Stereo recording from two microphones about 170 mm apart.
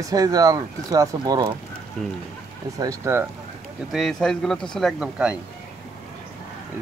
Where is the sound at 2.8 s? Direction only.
15° right (ahead or behind).